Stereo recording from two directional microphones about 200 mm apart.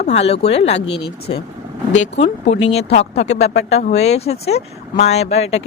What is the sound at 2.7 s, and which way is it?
Speech, 30° left (ahead or behind).